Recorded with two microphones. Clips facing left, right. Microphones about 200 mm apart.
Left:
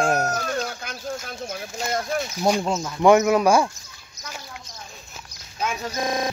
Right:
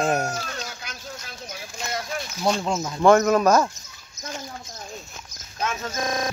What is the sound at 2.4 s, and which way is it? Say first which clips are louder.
Speech: left 1 dB; 10° left (ahead or behind).